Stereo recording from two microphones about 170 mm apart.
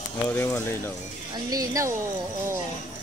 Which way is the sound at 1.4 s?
20° right (ahead or behind).